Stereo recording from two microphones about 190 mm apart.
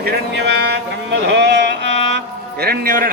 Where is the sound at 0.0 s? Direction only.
55° right (ahead or behind).